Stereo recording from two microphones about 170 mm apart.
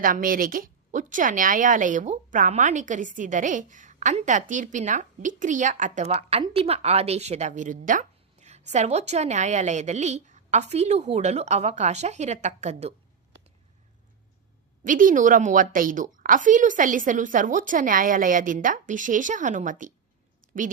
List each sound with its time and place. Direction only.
0.0 s speech: 55° right (ahead or behind)
14.8 s speech: 50° right (ahead or behind)